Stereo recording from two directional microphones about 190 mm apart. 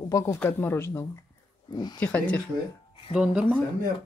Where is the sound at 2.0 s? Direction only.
5° left (ahead or behind).